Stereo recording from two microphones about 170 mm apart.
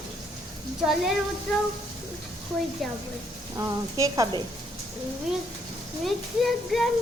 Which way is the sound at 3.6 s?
20° right (ahead or behind).